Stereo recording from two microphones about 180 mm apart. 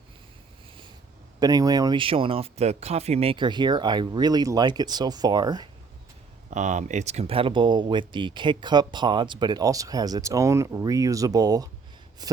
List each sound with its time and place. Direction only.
1.4 s speech: 20° right (ahead or behind)
6.5 s speech: 45° right (ahead or behind); by 12.4 s 20° right (ahead or behind)